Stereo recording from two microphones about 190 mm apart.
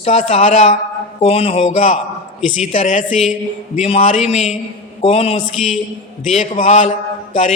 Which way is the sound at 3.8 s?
30° left (ahead or behind).